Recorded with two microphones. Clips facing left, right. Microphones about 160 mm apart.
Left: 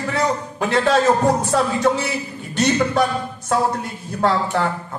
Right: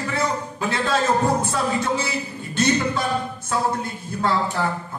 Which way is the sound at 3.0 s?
75° left (ahead or behind).